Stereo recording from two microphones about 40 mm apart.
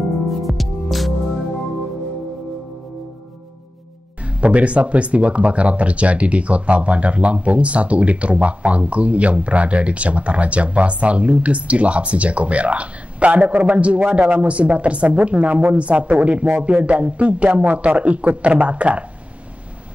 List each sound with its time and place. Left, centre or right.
0.4 s music: centre
4.2 s speech: right